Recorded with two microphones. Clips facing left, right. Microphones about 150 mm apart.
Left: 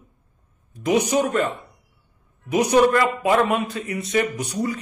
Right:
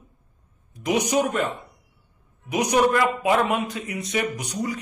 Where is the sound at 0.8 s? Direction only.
15° right (ahead or behind).